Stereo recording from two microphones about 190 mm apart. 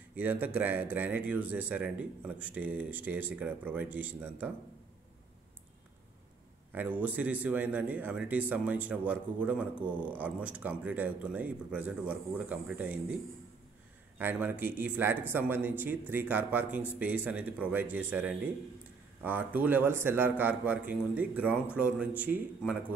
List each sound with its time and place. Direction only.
0.2 s speech: 10° right (ahead or behind)
6.7 s speech: 10° right (ahead or behind)
14.1 s speech: 10° right (ahead or behind)